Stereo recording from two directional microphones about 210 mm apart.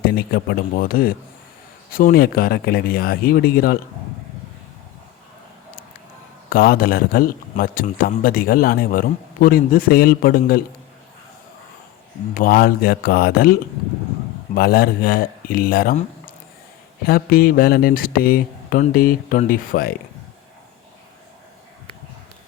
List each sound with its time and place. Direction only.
0.0 s a man's voice: 50° left (ahead or behind)
6.5 s a man's voice: 45° left (ahead or behind)
12.3 s a man's voice: 40° left (ahead or behind)
14.5 s a man's voice: 45° left (ahead or behind)